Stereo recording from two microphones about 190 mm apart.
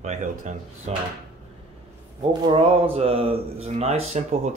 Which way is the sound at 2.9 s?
30° right (ahead or behind).